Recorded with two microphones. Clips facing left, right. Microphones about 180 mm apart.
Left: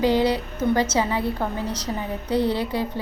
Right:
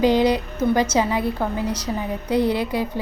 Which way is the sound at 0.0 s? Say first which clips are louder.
Right 3 dB; 15° right (ahead or behind).